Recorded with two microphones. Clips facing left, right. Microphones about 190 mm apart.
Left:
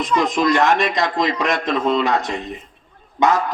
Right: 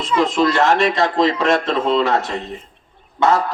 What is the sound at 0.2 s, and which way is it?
Speech, 15° left (ahead or behind).